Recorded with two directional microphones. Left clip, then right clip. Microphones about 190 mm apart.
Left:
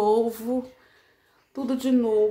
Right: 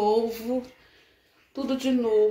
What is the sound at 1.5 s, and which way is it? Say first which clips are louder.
Speech: left 2 dB; 25° left (ahead or behind).